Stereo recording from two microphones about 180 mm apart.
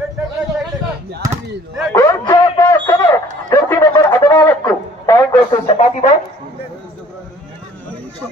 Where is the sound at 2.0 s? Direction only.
20° left (ahead or behind).